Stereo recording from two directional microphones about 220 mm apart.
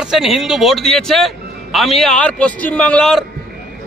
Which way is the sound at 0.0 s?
Centre (ahead or behind).